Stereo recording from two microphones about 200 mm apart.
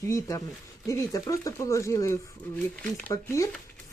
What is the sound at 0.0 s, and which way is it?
Speech, 15° left (ahead or behind).